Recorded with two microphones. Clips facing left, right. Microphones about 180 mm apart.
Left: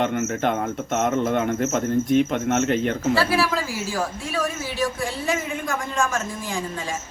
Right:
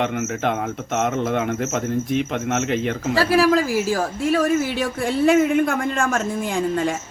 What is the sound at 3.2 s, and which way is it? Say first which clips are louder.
A man's voice: right 5 dB; 45° right (ahead or behind).